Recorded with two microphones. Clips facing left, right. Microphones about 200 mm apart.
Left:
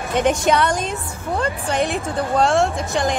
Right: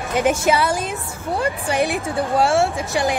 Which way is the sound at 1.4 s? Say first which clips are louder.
Right 1 dB; 15° right (ahead or behind).